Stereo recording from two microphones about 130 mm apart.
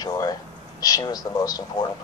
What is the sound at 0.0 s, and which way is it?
Speech, 30° left (ahead or behind).